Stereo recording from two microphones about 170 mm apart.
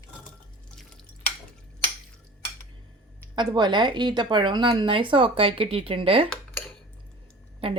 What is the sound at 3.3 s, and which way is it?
A woman's voice, 25° right (ahead or behind).